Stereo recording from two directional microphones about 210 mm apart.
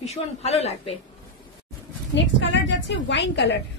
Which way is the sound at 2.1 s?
60° left (ahead or behind).